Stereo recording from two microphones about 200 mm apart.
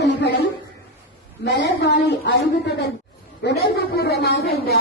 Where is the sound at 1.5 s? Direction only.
60° left (ahead or behind).